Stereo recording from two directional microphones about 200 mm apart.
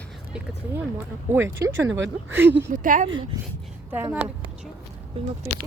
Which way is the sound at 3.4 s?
15° right (ahead or behind).